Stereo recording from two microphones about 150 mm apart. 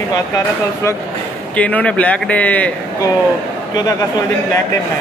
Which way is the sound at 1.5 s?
10° left (ahead or behind).